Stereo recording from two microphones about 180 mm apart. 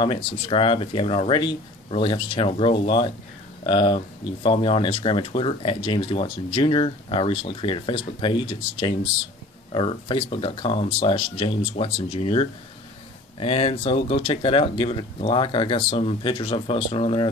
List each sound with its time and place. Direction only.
0.0 s speech: 30° left (ahead or behind)